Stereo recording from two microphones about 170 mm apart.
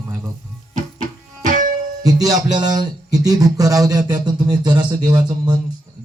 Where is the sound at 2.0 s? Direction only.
20° right (ahead or behind).